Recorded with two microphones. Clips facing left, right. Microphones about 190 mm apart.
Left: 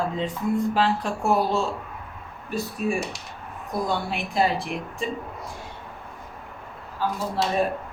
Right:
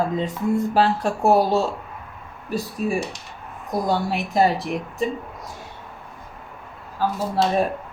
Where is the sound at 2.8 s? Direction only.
35° right (ahead or behind).